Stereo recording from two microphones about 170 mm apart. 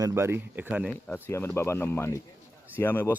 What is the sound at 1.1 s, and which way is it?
Speech, 15° left (ahead or behind).